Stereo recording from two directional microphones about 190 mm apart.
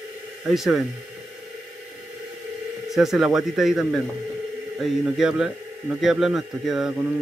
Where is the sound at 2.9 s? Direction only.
Centre (ahead or behind).